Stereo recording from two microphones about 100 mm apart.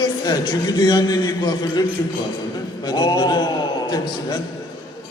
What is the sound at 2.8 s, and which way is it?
Speech, 45° left (ahead or behind).